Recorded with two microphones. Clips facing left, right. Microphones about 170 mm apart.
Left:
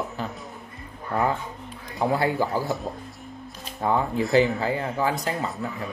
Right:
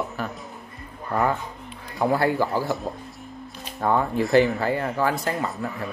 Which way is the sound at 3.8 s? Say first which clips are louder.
Right 1 dB; 20° left (ahead or behind).